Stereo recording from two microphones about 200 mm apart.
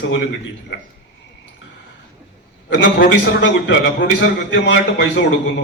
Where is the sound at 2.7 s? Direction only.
60° left (ahead or behind).